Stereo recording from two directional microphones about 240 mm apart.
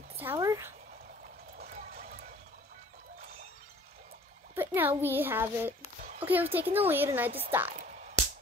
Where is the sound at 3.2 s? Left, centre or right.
Right.